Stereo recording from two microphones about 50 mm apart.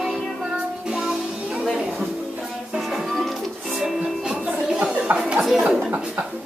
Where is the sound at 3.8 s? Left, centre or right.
Centre.